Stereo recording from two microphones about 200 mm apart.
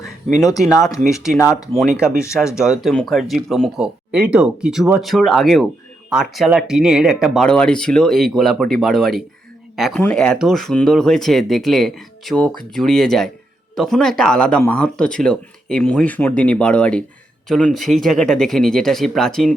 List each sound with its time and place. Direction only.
0.7 s speech: 15° left (ahead or behind)
1.0 s speech: centre (ahead or behind)
1.4 s speech: 15° left (ahead or behind)
2.0 s speech: 5° right (ahead or behind)